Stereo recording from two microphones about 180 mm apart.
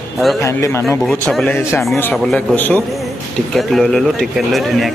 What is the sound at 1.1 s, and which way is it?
Speech, centre (ahead or behind).